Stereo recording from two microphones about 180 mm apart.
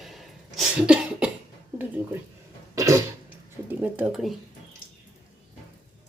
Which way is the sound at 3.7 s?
10° right (ahead or behind).